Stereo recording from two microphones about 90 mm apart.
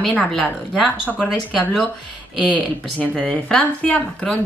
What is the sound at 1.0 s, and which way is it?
Speech, 15° left (ahead or behind).